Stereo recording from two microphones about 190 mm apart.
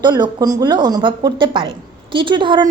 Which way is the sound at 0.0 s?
20° right (ahead or behind).